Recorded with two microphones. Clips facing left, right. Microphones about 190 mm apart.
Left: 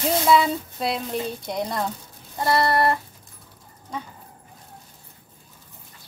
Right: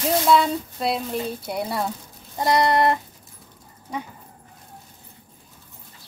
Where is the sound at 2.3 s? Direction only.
15° right (ahead or behind).